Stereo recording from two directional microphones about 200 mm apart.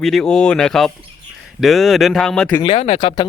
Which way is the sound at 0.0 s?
Centre (ahead or behind).